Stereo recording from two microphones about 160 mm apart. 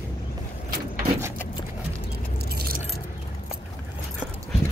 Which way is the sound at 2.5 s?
75° right (ahead or behind).